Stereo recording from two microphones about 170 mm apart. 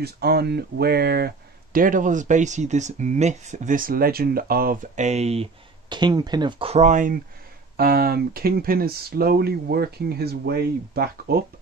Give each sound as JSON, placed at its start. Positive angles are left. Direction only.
{"t": 0.0, "sound": "speech", "side_deg": -70}
{"t": 4.9, "sound": "speech", "side_deg": -40}
{"t": 6.7, "sound": "speech", "side_deg": -45}
{"t": 7.7, "sound": "speech", "side_deg": -60}